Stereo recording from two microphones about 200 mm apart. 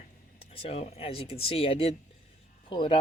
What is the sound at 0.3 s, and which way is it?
Speech, 30° left (ahead or behind).